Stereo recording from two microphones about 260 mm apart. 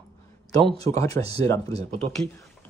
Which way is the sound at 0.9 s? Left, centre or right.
Centre.